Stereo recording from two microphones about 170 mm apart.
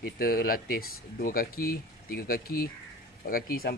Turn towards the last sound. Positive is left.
turn(degrees=60)  # may be behind; listen again after turning